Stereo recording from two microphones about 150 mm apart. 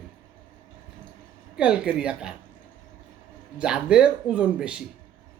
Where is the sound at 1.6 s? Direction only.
10° right (ahead or behind).